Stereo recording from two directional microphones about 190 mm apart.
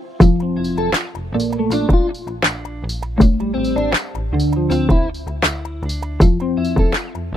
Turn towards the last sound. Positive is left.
turn(degrees=0)  # may be behind; listen again after turning